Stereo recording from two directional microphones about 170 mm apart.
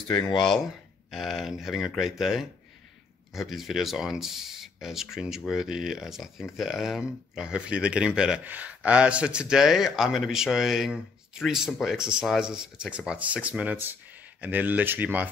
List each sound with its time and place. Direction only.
0.1 s speech: 25° left (ahead or behind)
1.1 s speech: centre (ahead or behind)